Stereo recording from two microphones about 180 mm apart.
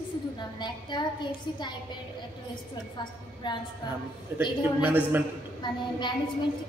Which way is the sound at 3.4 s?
25° left (ahead or behind).